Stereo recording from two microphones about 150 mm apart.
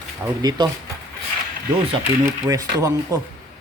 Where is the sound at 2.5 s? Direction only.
20° right (ahead or behind).